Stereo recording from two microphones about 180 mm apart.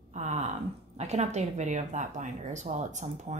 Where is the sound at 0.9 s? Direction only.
40° right (ahead or behind).